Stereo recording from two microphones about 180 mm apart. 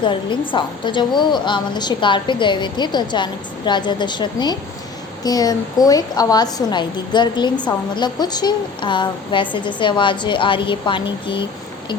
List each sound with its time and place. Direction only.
0.0 s a woman's voice: 25° left (ahead or behind)